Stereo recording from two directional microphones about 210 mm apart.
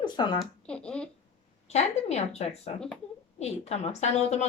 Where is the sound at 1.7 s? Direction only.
30° left (ahead or behind).